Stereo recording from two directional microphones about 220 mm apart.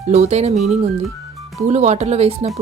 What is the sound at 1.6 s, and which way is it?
Speech, 30° right (ahead or behind).